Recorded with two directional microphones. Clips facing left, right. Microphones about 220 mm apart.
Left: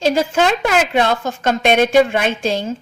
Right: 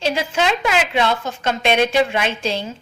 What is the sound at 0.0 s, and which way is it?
A woman's voice, 45° left (ahead or behind).